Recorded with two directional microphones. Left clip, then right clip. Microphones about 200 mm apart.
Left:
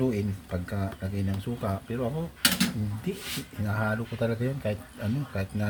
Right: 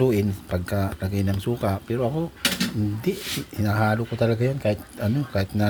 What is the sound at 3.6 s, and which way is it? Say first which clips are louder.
Speech: right 7 dB; 40° right (ahead or behind).